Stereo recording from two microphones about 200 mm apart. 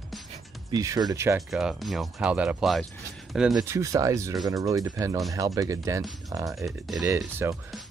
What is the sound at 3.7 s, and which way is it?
Speech, 15° right (ahead or behind).